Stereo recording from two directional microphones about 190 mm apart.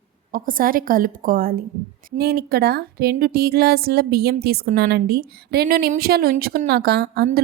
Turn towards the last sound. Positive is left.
turn(degrees=-55)  # may be behind; listen again after turning